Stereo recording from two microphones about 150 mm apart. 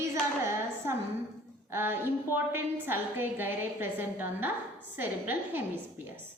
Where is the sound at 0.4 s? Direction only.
15° right (ahead or behind).